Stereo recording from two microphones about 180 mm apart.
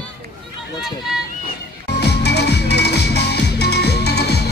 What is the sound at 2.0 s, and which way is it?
Music, 65° left (ahead or behind).